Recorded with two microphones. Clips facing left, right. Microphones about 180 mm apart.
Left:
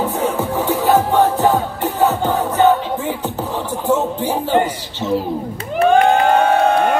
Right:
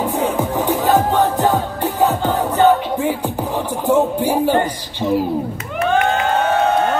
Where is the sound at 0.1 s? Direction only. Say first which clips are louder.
Even; 15° right (ahead or behind).